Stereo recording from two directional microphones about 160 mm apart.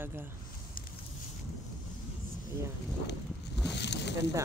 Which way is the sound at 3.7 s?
90° left.